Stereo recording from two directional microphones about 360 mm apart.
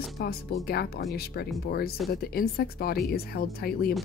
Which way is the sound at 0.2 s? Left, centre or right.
Left.